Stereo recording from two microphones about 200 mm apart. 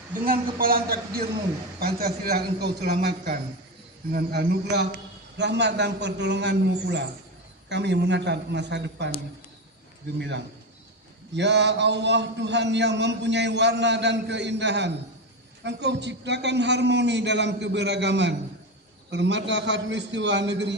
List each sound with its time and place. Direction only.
0.3 s a woman's voice: 45° right (ahead or behind)
10.2 s a man's voice: 60° right (ahead or behind)